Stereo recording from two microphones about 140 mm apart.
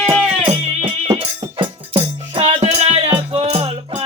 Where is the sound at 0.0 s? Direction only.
40° right (ahead or behind).